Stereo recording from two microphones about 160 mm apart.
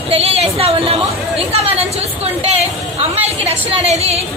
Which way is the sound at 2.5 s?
40° right (ahead or behind).